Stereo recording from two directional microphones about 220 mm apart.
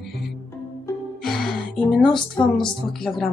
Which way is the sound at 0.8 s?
Centre (ahead or behind).